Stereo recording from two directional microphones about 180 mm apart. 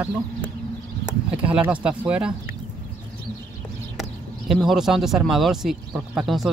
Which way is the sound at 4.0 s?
Centre (ahead or behind).